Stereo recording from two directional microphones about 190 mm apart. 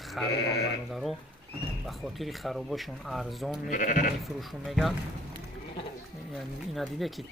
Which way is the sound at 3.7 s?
45° left (ahead or behind).